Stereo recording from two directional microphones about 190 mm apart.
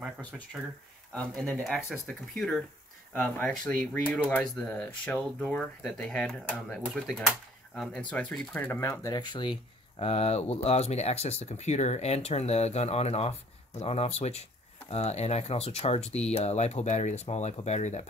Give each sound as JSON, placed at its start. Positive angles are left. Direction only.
{"t": 0.5, "sound": "speech", "side_deg": -5}